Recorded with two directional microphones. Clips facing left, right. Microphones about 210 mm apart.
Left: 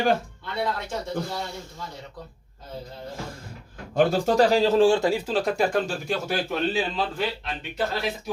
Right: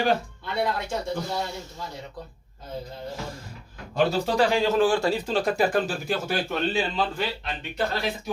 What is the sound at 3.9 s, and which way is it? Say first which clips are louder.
Speech: left 3 dB; 50° left (ahead or behind).